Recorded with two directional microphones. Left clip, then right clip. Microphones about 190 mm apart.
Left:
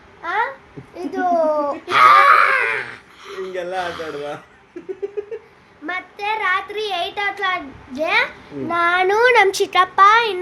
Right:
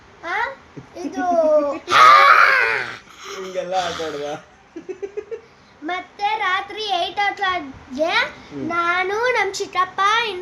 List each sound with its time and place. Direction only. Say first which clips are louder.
0.2 s babbling: left 3 dB; 25° left (ahead or behind)
0.9 s a child's voice: left 1 dB; 30° left (ahead or behind)
1.9 s a sound: even; 15° right (ahead or behind)
3.8 s speech: right 2 dB; 15° right (ahead or behind)
5.8 s a child's voice: right 2 dB; 25° left (ahead or behind)
8.7 s a child's voice: left 4 dB; 45° left (ahead or behind)
9.9 s a child's voice: left 7 dB; 35° left (ahead or behind)